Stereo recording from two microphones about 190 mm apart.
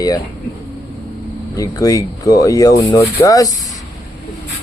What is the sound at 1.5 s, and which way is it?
Speech, 15° left (ahead or behind).